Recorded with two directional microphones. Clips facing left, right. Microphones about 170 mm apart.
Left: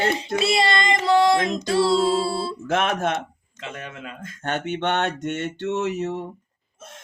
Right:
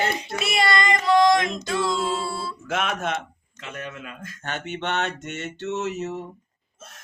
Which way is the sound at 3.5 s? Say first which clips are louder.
Even; 25° left (ahead or behind).